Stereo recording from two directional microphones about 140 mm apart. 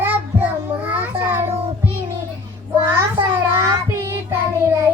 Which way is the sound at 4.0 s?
20° right (ahead or behind).